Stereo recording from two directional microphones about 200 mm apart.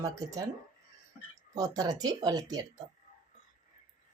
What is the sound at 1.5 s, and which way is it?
Speech, 15° right (ahead or behind).